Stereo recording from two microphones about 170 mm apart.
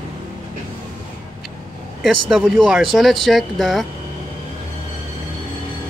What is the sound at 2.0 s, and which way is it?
Speech, centre (ahead or behind).